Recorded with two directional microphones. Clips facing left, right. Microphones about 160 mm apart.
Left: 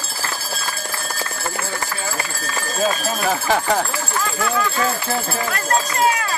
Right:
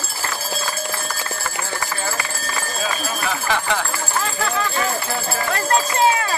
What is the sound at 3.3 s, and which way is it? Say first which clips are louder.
Speech: left 4 dB; 40° left (ahead or behind).